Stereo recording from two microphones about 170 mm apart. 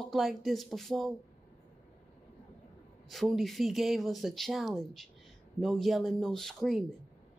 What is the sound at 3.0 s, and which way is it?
Speech, centre (ahead or behind).